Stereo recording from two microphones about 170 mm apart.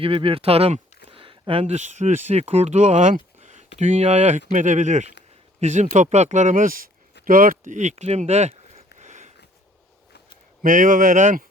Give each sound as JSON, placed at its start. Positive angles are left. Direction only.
{"t": 0.0, "sound": "speech", "side_deg": -30}
{"t": 3.4, "sound": "a sound", "side_deg": -45}
{"t": 3.8, "sound": "speech", "side_deg": -45}
{"t": 10.6, "sound": "speech", "side_deg": -50}